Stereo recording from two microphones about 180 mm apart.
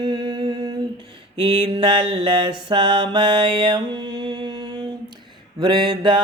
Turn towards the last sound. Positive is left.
turn(degrees=-25)  # may be behind; listen again after turning